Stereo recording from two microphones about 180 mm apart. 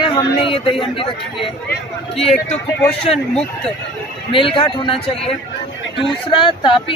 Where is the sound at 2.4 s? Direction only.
5° left (ahead or behind).